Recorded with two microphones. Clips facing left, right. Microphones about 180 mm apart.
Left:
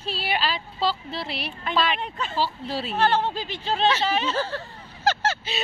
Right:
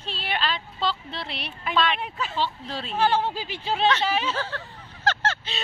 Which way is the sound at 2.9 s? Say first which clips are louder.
Even; 10° right (ahead or behind).